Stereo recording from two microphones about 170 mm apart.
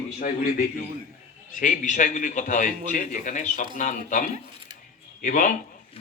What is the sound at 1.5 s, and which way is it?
A man's voice, 50° left (ahead or behind).